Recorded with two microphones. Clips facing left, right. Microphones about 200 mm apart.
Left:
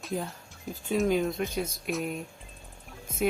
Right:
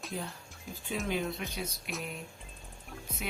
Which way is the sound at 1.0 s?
45° left (ahead or behind).